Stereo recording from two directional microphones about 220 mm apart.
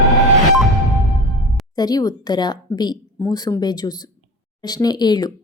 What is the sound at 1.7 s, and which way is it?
Speech, 15° left (ahead or behind).